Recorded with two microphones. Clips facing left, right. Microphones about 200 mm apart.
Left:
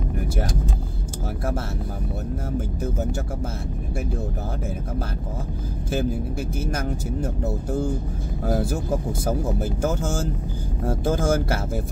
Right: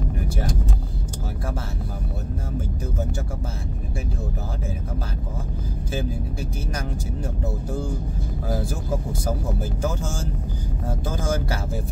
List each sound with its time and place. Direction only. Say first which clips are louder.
11.1 s speech: left 5 dB; 50° left (ahead or behind)